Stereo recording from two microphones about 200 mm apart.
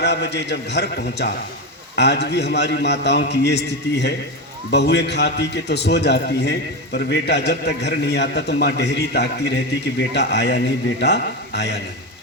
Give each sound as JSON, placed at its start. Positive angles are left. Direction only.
{"t": 0.0, "sound": "a man's voice", "side_deg": 60}